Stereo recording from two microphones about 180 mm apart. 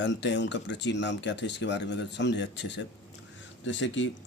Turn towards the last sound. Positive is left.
turn(degrees=90)